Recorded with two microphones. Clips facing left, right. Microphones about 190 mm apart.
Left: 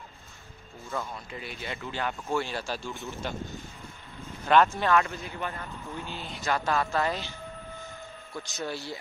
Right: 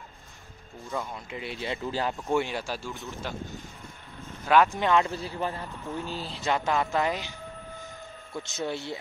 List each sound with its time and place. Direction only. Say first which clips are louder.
0.9 s speech: right 1 dB; 20° right (ahead or behind)
2.1 s speech: right 3 dB; 20° right (ahead or behind); by 3.3 s centre (ahead or behind)
4.5 s speech: even; 15° right (ahead or behind)
5.1 s speech: right 4 dB; 35° right (ahead or behind)
6.4 s speech: right 1 dB; 20° right (ahead or behind)
8.6 s speech: right 3 dB; 25° right (ahead or behind)